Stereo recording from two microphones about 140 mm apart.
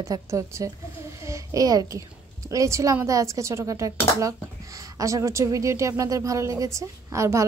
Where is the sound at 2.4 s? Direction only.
20° right (ahead or behind).